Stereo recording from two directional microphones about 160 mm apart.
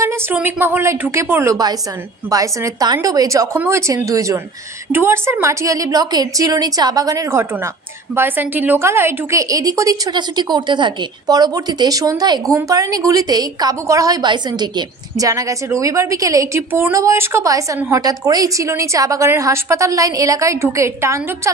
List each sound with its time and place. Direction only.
0.0 s a woman's voice: 15° right (ahead or behind)